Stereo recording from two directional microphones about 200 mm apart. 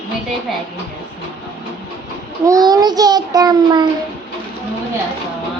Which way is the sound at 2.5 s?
20° right (ahead or behind).